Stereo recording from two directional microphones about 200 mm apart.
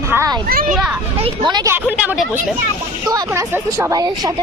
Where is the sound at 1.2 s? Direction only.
20° right (ahead or behind).